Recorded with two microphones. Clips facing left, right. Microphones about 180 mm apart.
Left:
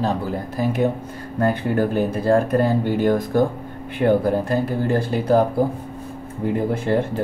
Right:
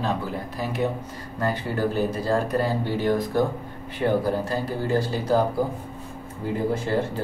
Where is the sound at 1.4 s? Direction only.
55° left (ahead or behind).